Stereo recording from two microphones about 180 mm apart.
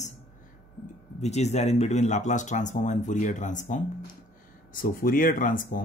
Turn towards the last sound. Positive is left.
turn(degrees=50)  # may be behind; listen again after turning